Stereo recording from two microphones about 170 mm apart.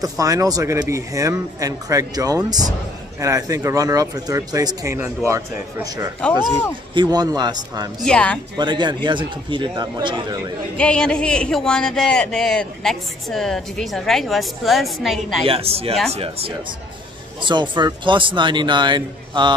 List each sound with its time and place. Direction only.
0.0 s speech: 20° right (ahead or behind)
6.2 s speech: 5° left (ahead or behind)
6.9 s speech: 25° right (ahead or behind)
8.0 s speech: 5° left (ahead or behind)
8.5 s speech: 25° right (ahead or behind)
10.8 s speech: 5° left (ahead or behind)
15.4 s speech: 35° right (ahead or behind)